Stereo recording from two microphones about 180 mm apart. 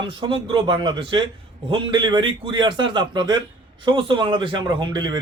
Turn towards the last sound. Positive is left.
turn(degrees=-25)  # may be behind; listen again after turning